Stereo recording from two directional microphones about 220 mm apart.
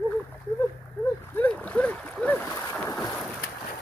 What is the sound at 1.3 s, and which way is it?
Boat, 5° left (ahead or behind).